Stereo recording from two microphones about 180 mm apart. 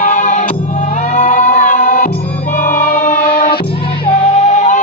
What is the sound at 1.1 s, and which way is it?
Music, 50° left (ahead or behind).